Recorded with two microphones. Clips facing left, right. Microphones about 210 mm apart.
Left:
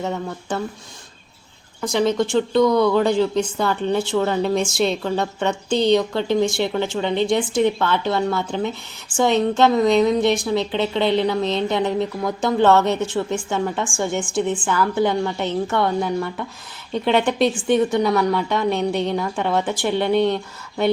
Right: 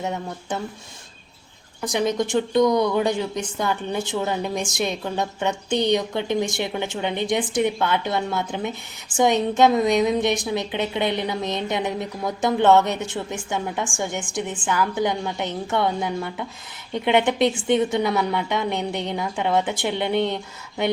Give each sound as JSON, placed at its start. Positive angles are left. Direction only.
{"t": 0.0, "sound": "a woman's voice", "side_deg": -15}
{"t": 2.0, "sound": "a woman's voice", "side_deg": -20}